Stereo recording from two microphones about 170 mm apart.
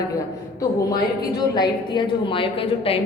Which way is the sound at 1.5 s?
25° left (ahead or behind).